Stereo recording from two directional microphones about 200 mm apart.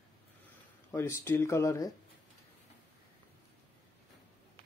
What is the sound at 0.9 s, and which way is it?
Speech, 15° left (ahead or behind).